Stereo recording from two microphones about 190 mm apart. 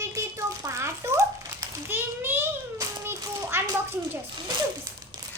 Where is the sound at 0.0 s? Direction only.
15° right (ahead or behind).